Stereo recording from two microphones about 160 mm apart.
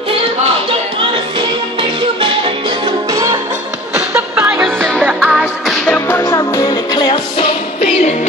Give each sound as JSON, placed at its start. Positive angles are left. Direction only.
{"t": 1.8, "sound": "music", "side_deg": -35}
{"t": 3.1, "sound": "music", "side_deg": -20}
{"t": 3.9, "sound": "music", "side_deg": -5}
{"t": 5.9, "sound": "music", "side_deg": 15}
{"t": 7.3, "sound": "music", "side_deg": 40}